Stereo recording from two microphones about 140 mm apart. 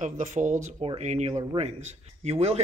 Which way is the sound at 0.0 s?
60° right (ahead or behind).